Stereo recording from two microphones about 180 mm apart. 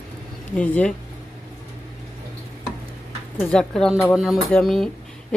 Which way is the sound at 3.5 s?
5° left (ahead or behind).